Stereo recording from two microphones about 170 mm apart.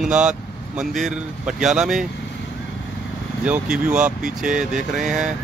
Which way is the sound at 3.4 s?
5° right (ahead or behind).